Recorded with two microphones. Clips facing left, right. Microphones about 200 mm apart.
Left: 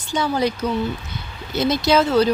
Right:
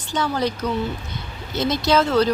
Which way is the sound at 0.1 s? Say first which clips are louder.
Left 2 dB; 10° left (ahead or behind).